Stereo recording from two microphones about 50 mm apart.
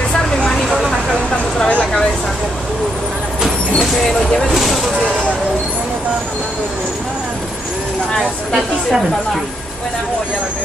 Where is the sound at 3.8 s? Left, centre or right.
Centre.